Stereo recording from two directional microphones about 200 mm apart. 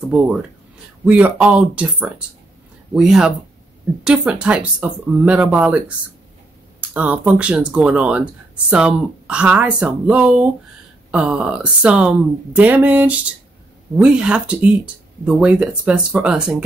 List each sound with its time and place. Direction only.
0.0 s speech: 5° right (ahead or behind)